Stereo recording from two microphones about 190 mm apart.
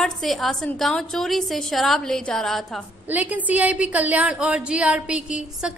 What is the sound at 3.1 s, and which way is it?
A woman's voice, 10° right (ahead or behind).